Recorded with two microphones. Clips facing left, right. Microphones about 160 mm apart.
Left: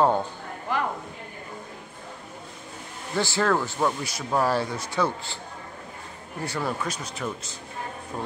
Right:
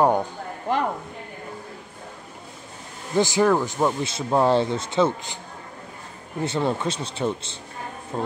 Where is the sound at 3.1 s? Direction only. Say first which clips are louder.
Right 5 dB; 15° right (ahead or behind).